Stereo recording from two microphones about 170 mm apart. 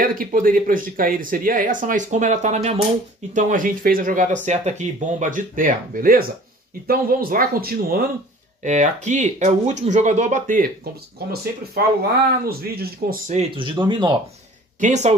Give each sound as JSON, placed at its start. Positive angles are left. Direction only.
{"t": 0.0, "sound": "speech", "side_deg": -55}
{"t": 8.6, "sound": "speech", "side_deg": -45}
{"t": 11.8, "sound": "speech", "side_deg": -60}
{"t": 13.3, "sound": "speech", "side_deg": -35}
{"t": 14.8, "sound": "speech", "side_deg": -45}